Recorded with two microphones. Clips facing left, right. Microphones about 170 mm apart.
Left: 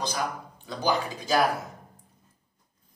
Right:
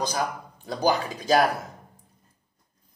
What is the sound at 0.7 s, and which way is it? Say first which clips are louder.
Speech: right 3 dB; 40° right (ahead or behind).